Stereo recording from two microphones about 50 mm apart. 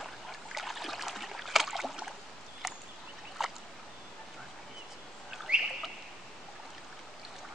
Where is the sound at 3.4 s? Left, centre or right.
Centre.